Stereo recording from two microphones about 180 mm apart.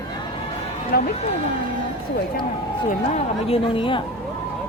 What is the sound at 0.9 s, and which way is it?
Speech, 55° left (ahead or behind).